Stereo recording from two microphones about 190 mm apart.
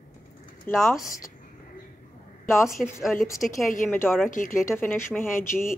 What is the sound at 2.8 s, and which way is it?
A woman's voice, centre (ahead or behind).